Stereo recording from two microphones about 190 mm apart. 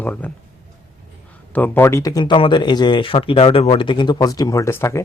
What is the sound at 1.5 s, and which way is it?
Speech, 10° left (ahead or behind).